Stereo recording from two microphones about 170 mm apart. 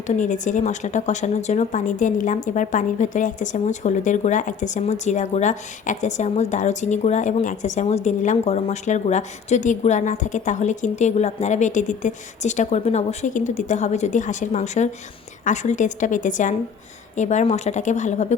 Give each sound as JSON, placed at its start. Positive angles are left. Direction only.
{"t": 0.1, "sound": "a woman's voice", "side_deg": 45}